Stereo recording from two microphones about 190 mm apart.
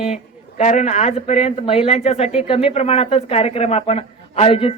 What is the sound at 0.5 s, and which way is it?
Speech, 40° left (ahead or behind).